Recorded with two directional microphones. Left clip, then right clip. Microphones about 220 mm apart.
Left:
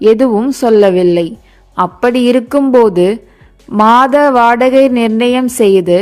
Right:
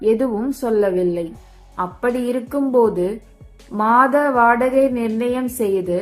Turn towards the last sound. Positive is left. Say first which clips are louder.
# left 11 dB
turn(degrees=40)  # may be behind; listen again after turning